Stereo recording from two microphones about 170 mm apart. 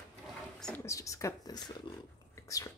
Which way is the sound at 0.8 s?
20° left (ahead or behind).